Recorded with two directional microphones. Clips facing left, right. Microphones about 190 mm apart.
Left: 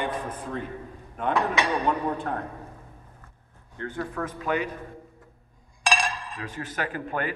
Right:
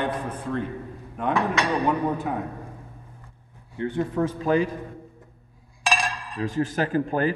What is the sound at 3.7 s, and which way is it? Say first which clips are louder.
Speech: right 7 dB; 15° right (ahead or behind).